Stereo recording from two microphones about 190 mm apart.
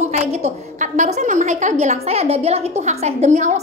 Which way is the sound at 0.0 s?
35° right (ahead or behind).